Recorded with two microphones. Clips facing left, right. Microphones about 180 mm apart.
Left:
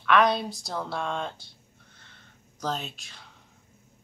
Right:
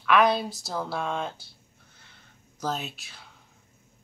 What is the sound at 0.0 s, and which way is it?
Speech, 5° right (ahead or behind).